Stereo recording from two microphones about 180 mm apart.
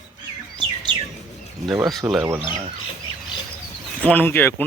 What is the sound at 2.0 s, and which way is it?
Speech, 10° right (ahead or behind).